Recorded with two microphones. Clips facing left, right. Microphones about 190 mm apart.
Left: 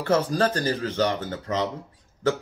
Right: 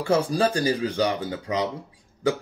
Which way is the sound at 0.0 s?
10° right (ahead or behind).